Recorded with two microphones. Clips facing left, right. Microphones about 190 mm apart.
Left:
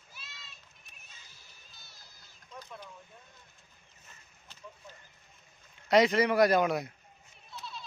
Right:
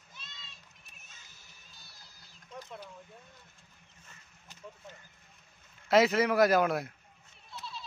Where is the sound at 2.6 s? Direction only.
25° right (ahead or behind).